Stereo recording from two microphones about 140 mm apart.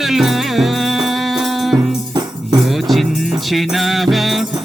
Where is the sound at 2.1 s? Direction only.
30° right (ahead or behind).